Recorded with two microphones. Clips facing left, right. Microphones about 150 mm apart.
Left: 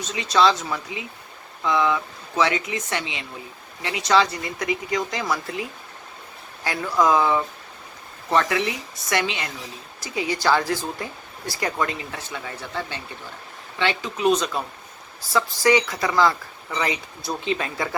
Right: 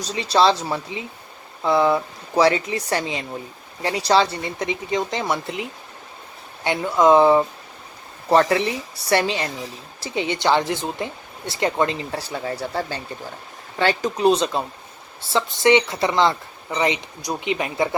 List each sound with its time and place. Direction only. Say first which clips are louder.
0.0 s speech: right 2 dB; 35° right (ahead or behind)
6.7 s speech: right 4 dB; 25° right (ahead or behind)